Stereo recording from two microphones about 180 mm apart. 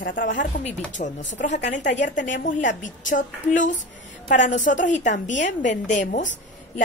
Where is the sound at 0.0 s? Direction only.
50° left (ahead or behind).